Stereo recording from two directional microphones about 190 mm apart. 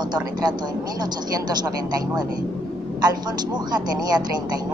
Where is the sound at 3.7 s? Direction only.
20° right (ahead or behind).